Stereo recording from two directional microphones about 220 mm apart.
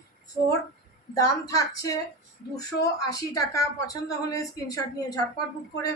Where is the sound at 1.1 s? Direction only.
15° left (ahead or behind).